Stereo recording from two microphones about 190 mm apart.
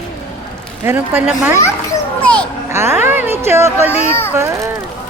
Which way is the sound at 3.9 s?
35° left (ahead or behind).